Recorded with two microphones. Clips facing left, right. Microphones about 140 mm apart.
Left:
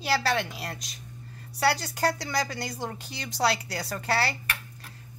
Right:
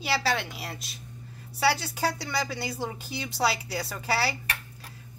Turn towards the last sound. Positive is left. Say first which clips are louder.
# left 1 dB
turn(degrees=0)  # may be behind; listen again after turning